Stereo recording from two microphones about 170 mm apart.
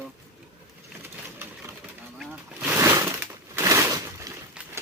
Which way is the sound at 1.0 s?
15° right (ahead or behind).